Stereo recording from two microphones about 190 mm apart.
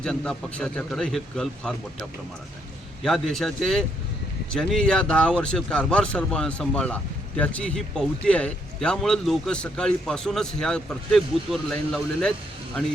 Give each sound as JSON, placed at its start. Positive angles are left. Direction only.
{"t": 0.0, "sound": "speech", "side_deg": 5}
{"t": 3.0, "sound": "speech", "side_deg": 0}